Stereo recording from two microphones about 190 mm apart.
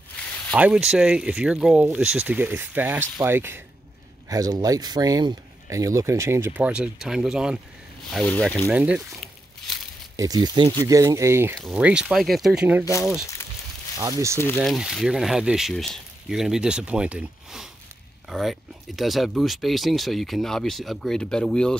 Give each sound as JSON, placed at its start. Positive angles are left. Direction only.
{"t": 0.6, "sound": "speech", "side_deg": -5}
{"t": 8.6, "sound": "speech", "side_deg": -5}
{"t": 10.1, "sound": "speech", "side_deg": -20}
{"t": 11.5, "sound": "speech", "side_deg": -5}
{"t": 13.9, "sound": "speech", "side_deg": -15}
{"t": 14.6, "sound": "speech", "side_deg": 0}